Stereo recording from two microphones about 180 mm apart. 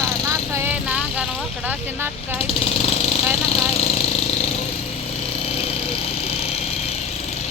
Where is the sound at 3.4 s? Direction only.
35° left (ahead or behind).